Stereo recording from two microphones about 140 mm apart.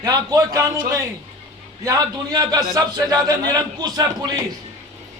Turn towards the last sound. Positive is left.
turn(degrees=-30)  # may be behind; listen again after turning